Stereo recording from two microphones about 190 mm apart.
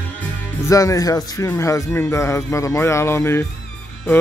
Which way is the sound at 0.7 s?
15° left (ahead or behind).